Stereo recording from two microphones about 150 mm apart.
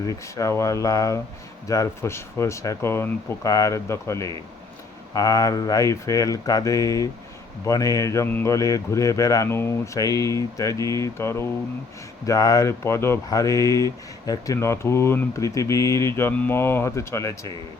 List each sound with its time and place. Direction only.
0.1 s speech: 20° left (ahead or behind)